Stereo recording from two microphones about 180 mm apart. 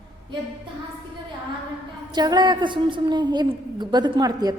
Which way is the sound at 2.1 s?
25° right (ahead or behind).